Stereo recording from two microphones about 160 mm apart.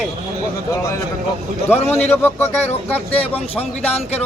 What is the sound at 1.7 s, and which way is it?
Speech, 40° left (ahead or behind).